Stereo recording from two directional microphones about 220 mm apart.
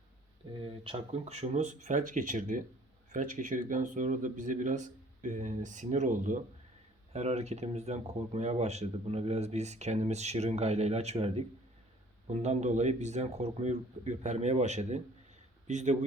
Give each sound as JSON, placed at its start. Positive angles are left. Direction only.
{"t": 0.6, "sound": "speech", "side_deg": -25}